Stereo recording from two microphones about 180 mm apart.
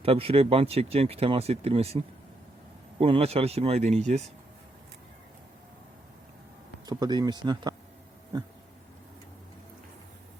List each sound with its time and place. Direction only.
0.0 s speech: 30° right (ahead or behind)
6.8 s speech: 20° right (ahead or behind)